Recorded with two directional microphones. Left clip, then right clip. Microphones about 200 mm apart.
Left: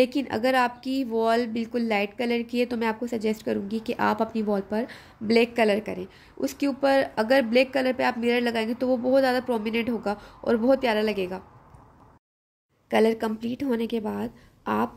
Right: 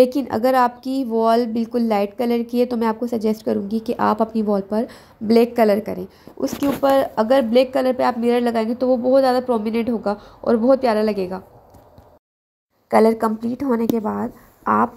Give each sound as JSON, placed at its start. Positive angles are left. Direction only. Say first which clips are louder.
{"t": 0.0, "sound": "a woman's voice", "louder": "right 7 dB", "side_deg": -5}
{"t": 6.8, "sound": "a woman's voice", "louder": "right 5 dB", "side_deg": 10}
{"t": 13.6, "sound": "a woman's voice", "louder": "right 7 dB", "side_deg": 20}